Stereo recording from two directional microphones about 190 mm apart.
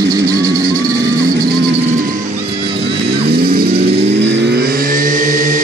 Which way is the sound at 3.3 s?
50° right (ahead or behind).